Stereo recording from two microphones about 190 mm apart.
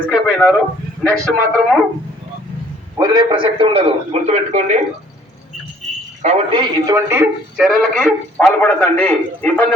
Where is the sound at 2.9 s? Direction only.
20° right (ahead or behind); by 4.8 s 35° right (ahead or behind).